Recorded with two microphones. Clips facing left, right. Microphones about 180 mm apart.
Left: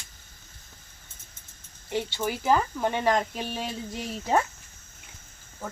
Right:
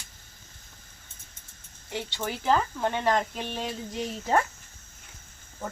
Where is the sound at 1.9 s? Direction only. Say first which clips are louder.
Left 4 dB; 10° left (ahead or behind).